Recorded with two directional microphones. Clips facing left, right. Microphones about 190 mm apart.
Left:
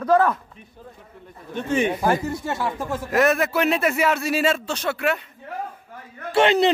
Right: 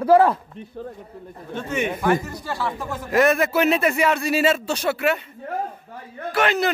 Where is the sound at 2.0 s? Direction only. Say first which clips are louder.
Even; 30° left (ahead or behind).